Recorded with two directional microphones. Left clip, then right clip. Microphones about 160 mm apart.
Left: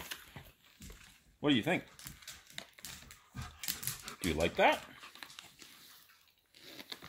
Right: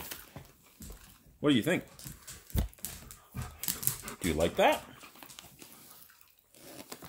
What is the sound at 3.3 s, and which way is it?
Dog, 75° right (ahead or behind).